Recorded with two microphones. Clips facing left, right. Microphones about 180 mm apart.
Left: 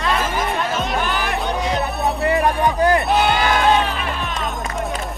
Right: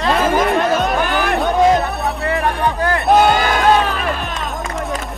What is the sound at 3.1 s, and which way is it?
Music, 45° right (ahead or behind).